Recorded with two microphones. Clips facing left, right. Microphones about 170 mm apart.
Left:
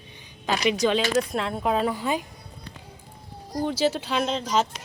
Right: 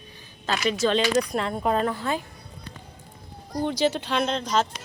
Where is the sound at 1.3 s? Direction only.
Centre (ahead or behind).